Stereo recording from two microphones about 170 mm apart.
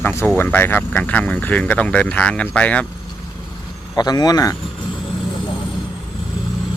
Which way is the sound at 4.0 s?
25° left (ahead or behind).